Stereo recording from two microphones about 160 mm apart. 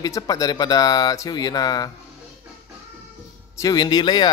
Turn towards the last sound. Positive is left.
turn(degrees=25)  # may be behind; listen again after turning